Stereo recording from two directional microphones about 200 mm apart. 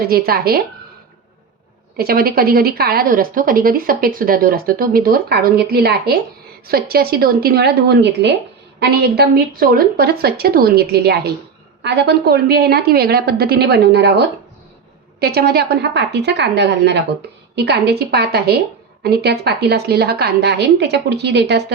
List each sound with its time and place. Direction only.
0.0 s a woman's voice: 50° right (ahead or behind)
2.0 s a woman's voice: 50° right (ahead or behind)